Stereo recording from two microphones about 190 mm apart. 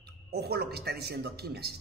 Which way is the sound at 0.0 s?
60° right (ahead or behind).